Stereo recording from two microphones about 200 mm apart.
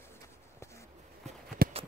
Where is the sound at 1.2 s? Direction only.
40° right (ahead or behind).